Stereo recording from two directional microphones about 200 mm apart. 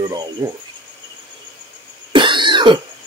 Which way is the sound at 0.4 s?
20° right (ahead or behind).